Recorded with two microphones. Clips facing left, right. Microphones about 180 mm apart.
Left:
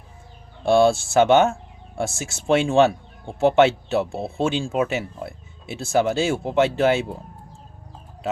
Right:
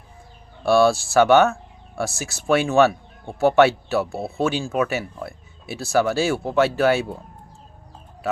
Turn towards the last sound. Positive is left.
turn(degrees=20)  # may be behind; listen again after turning